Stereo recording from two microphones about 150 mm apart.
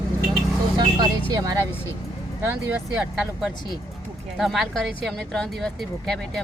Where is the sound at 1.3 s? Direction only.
25° right (ahead or behind).